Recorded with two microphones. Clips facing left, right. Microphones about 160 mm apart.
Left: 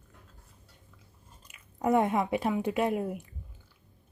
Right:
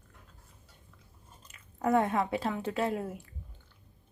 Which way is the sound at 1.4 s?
10° left (ahead or behind).